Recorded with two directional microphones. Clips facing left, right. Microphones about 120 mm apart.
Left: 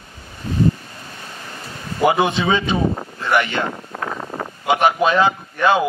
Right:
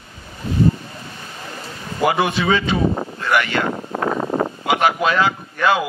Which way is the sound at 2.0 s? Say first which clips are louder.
Left 1 dB; 20° left (ahead or behind).